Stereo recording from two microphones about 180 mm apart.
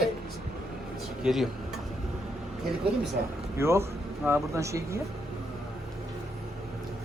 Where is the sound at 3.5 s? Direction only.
15° right (ahead or behind).